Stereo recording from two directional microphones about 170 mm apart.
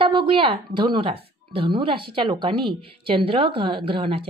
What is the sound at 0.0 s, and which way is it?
A woman's voice, 30° right (ahead or behind).